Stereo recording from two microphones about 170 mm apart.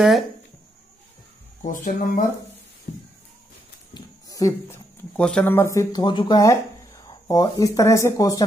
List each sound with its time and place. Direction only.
1.7 s speech: 55° left (ahead or behind)
3.9 s speech: 20° left (ahead or behind)